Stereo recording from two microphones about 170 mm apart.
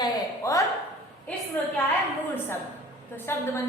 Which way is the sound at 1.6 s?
10° left (ahead or behind).